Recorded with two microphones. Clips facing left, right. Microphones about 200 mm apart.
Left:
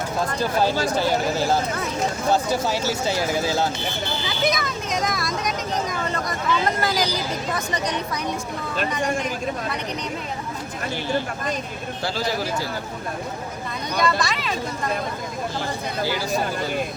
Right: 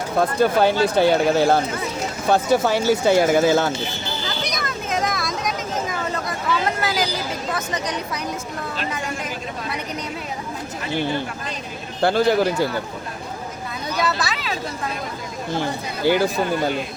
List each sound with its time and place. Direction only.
0.3 s speech: 60° right (ahead or behind)
4.4 s vehicle: centre (ahead or behind)
12.0 s speech: 55° right (ahead or behind)
14.0 s speech: 5° right (ahead or behind)
16.0 s speech: 55° right (ahead or behind)